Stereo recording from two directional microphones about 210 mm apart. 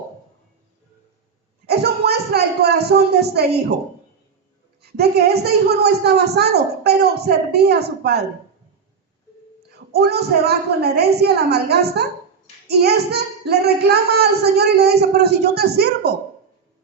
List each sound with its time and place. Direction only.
1.6 s a sound: 50° right (ahead or behind)
4.8 s speech: 50° right (ahead or behind)
9.9 s speech: 50° right (ahead or behind)